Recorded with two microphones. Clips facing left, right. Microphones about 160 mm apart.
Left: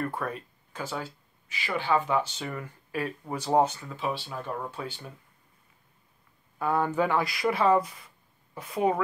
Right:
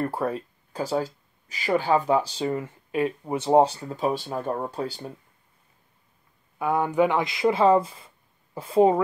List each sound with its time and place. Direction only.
0.0 s speech: 30° right (ahead or behind)
6.6 s speech: 15° right (ahead or behind)